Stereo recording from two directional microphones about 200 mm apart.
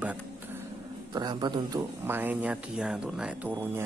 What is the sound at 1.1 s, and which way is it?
Speech, 20° right (ahead or behind).